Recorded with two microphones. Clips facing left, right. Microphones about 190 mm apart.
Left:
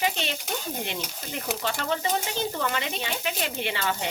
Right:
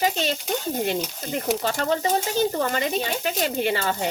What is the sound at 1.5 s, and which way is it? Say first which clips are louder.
Speech: right 5 dB; 40° right (ahead or behind).